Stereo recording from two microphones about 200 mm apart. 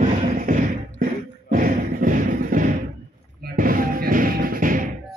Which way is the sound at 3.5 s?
45° right (ahead or behind).